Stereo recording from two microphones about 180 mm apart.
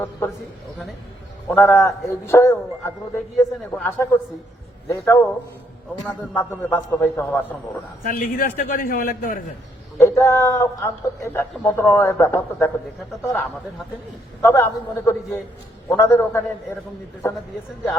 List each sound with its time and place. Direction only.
1.5 s a man's voice: 10° left (ahead or behind)
8.0 s a man's voice: 55° left (ahead or behind)
10.0 s a man's voice: 15° left (ahead or behind)